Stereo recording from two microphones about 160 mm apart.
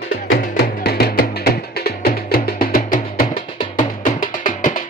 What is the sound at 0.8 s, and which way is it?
Music, 80° left.